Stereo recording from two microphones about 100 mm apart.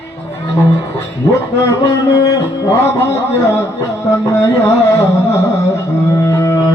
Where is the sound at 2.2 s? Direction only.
35° left (ahead or behind).